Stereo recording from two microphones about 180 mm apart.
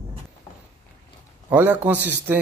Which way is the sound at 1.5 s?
10° right (ahead or behind).